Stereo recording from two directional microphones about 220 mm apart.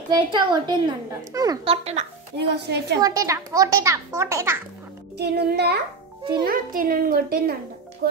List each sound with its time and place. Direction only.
0.1 s a woman's voice: 20° right (ahead or behind)
2.3 s a woman's voice: 50° right (ahead or behind)
3.0 s a child's voice: 15° right (ahead or behind)
5.1 s a woman's voice: 50° right (ahead or behind)